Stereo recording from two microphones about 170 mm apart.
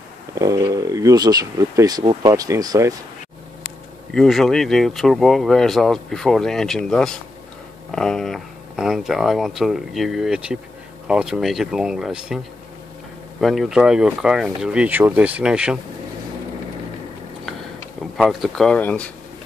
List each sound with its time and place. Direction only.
0.3 s speech: 20° right (ahead or behind)
4.1 s speech: centre (ahead or behind)
13.4 s speech: centre (ahead or behind)
18.1 s speech: centre (ahead or behind)